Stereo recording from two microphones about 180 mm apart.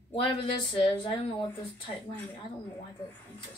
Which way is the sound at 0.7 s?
30° left (ahead or behind).